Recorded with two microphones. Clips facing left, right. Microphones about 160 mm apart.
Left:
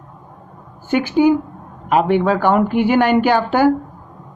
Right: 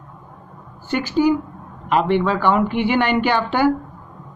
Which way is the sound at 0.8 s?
55° left (ahead or behind).